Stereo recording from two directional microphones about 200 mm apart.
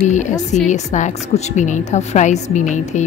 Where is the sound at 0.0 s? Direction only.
35° left (ahead or behind).